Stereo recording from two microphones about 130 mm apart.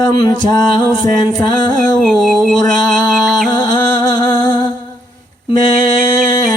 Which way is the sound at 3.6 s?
35° left (ahead or behind).